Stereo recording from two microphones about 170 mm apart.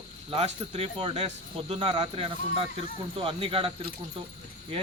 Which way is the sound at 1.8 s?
25° right (ahead or behind).